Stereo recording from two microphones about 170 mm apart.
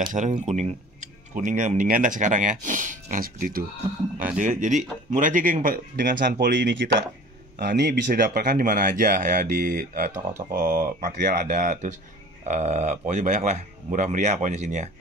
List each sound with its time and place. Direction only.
0.0 s speech: 50° right (ahead or behind); by 8.2 s 90° right
8.2 s speech: 55° right (ahead or behind)